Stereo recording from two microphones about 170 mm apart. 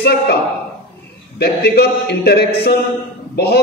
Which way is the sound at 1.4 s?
70° left (ahead or behind).